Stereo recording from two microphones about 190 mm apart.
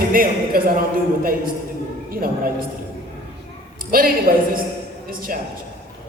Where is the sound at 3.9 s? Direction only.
50° right (ahead or behind).